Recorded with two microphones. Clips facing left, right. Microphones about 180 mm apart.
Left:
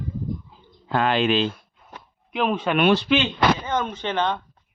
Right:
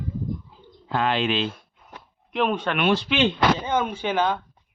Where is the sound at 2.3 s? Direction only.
Centre (ahead or behind).